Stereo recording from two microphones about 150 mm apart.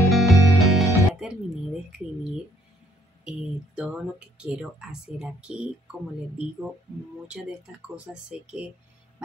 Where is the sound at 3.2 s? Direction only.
5° right (ahead or behind).